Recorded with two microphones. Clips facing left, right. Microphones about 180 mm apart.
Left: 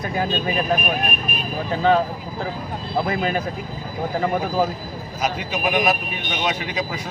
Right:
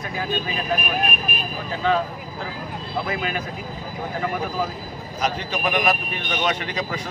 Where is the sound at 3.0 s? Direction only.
40° left (ahead or behind).